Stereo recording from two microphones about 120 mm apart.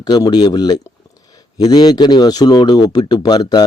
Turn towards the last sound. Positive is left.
turn(degrees=35)  # may be behind; listen again after turning